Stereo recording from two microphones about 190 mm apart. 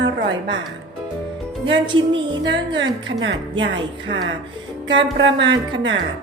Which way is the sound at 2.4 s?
70° right (ahead or behind).